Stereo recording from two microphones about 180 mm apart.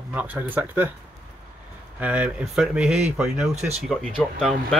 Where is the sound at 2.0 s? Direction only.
10° right (ahead or behind).